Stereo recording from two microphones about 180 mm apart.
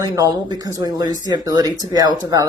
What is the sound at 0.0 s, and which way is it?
Speech, 20° right (ahead or behind).